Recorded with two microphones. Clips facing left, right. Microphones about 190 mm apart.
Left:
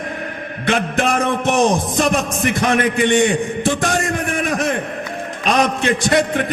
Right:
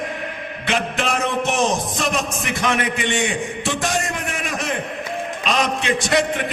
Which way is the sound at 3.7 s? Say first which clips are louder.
Left 4 dB; 55° left (ahead or behind).